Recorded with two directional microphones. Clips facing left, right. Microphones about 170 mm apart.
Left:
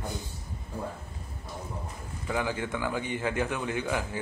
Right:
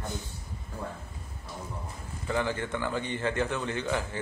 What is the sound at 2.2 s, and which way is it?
A man's voice, 10° left (ahead or behind).